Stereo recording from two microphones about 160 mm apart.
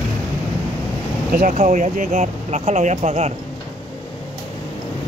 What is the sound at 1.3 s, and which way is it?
Speech, 50° right (ahead or behind).